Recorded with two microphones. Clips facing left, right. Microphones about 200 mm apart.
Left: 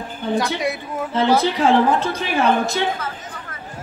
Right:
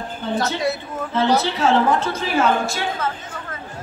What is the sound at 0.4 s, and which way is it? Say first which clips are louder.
A woman's voice: right 3 dB; 15° left (ahead or behind).